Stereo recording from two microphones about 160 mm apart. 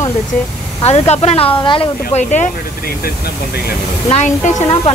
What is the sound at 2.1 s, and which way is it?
Speech, 50° left (ahead or behind).